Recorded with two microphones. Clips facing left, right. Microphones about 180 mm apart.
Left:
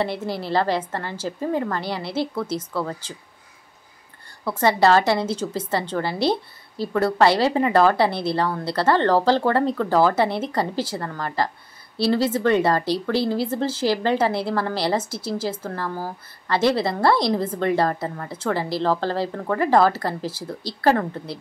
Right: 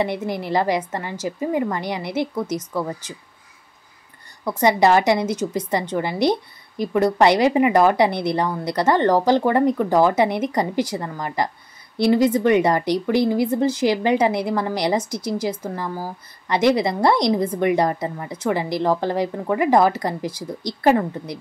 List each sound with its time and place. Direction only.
0.0 s a woman's voice: 15° right (ahead or behind)
4.5 s a woman's voice: 15° right (ahead or behind)